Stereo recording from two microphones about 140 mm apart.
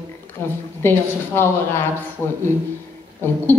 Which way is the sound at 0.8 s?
15° left (ahead or behind).